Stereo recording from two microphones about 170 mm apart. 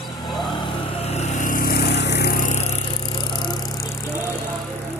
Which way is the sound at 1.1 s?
40° left (ahead or behind).